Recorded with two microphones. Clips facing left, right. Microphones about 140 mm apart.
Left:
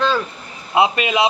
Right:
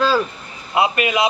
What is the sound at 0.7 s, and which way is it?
Speech, 25° left (ahead or behind).